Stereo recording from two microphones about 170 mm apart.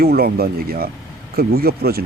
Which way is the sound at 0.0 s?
60° right (ahead or behind).